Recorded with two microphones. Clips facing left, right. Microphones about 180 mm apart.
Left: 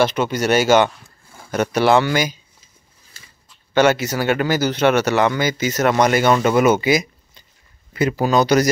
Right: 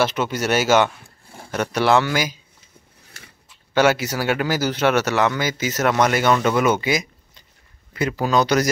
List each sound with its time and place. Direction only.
0.0 s speech: 5° right (ahead or behind)
2.6 s a sound: 65° right (ahead or behind)
3.4 s speech: 5° right (ahead or behind)
8.1 s speech: 5° left (ahead or behind)